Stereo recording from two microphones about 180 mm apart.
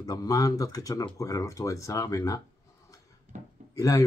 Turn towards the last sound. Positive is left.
turn(degrees=15)  # may be behind; listen again after turning